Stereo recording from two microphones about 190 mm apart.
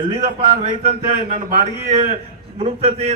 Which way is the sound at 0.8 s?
35° right (ahead or behind).